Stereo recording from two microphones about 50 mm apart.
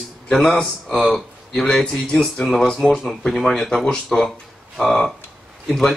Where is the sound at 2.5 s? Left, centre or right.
Centre.